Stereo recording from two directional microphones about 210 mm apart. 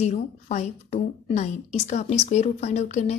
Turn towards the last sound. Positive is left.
turn(degrees=35)  # may be behind; listen again after turning